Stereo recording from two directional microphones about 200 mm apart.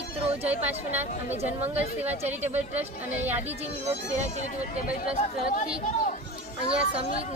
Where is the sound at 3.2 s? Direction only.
10° right (ahead or behind).